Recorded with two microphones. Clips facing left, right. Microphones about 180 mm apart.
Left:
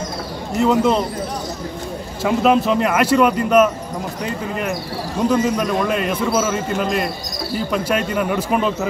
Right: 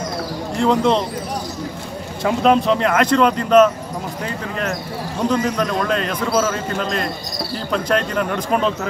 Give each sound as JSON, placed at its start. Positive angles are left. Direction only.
{"t": 0.6, "sound": "speech", "side_deg": 5}
{"t": 2.2, "sound": "speech", "side_deg": 5}